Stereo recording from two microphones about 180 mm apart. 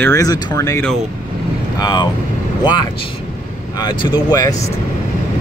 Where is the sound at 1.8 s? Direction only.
25° left (ahead or behind).